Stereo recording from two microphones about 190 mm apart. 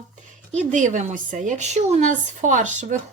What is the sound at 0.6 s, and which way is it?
A woman's voice, 40° right (ahead or behind).